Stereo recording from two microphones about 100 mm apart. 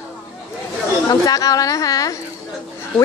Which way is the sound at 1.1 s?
35° left (ahead or behind).